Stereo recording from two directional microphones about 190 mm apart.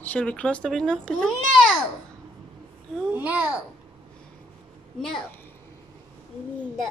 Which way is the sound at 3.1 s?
5° right (ahead or behind).